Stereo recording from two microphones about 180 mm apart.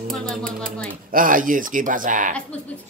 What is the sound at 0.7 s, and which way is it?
Speech, 50° right (ahead or behind).